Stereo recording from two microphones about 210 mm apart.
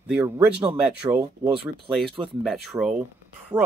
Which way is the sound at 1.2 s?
25° right (ahead or behind).